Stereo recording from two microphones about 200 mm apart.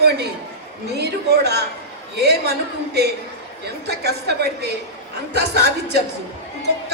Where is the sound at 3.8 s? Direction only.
55° right (ahead or behind).